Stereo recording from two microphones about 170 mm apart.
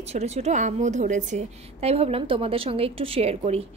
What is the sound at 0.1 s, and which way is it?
A woman's voice, 40° right (ahead or behind).